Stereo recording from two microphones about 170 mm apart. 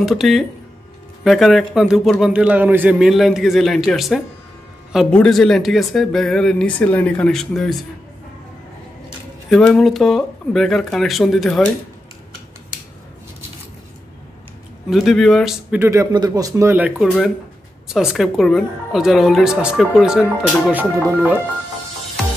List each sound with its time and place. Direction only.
0.0 s speech: centre (ahead or behind)
9.5 s speech: 5° left (ahead or behind)
14.9 s speech: centre (ahead or behind)
15.8 s speech: 20° right (ahead or behind)